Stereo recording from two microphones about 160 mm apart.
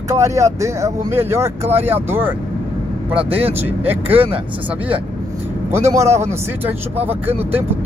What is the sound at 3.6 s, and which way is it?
Speech, 10° right (ahead or behind).